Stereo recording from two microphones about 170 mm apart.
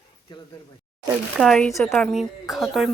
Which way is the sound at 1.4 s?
5° left (ahead or behind).